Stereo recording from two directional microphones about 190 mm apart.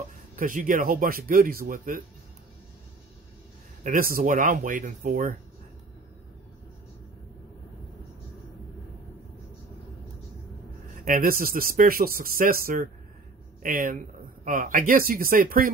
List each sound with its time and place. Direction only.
0.4 s speech: 45° right (ahead or behind)
3.8 s speech: 45° right (ahead or behind)
11.1 s speech: 45° right (ahead or behind)